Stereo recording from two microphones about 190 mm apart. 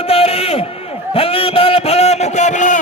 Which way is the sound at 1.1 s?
30° left (ahead or behind).